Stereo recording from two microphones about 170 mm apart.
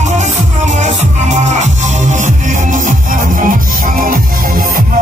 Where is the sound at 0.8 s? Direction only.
45° right (ahead or behind).